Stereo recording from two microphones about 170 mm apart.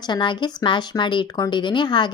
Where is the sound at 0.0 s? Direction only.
25° left (ahead or behind).